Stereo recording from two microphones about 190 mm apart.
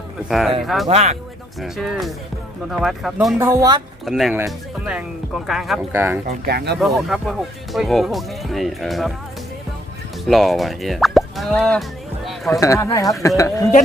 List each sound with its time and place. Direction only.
0.3 s speech: centre (ahead or behind)
0.9 s speech: 35° right (ahead or behind)
1.6 s speech: centre (ahead or behind)
3.3 s speech: 15° right (ahead or behind)
4.0 s speech: centre (ahead or behind)
5.9 s speech: 10° right (ahead or behind)
6.2 s speech: 55° right (ahead or behind)
6.7 s speech: centre (ahead or behind)
10.2 s speech: centre (ahead or behind)
12.5 s speech: 15° left (ahead or behind)